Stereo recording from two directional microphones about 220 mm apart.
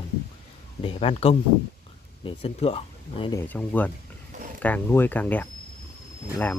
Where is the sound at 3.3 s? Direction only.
10° left (ahead or behind).